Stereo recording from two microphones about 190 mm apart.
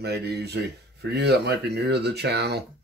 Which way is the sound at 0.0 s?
60° right (ahead or behind).